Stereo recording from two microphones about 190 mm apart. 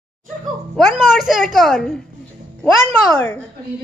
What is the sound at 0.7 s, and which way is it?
A woman's voice, centre (ahead or behind).